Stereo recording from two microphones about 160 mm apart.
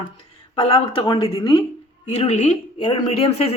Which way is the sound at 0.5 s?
35° left (ahead or behind).